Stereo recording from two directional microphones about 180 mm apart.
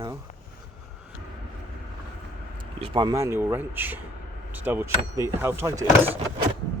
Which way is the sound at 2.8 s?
25° right (ahead or behind).